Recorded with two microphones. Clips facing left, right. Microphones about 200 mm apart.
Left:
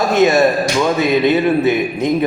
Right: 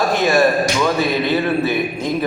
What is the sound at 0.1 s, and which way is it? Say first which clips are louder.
A man's voice: left 5 dB; 20° left (ahead or behind).